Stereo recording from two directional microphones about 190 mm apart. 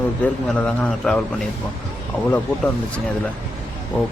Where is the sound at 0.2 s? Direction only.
10° left (ahead or behind).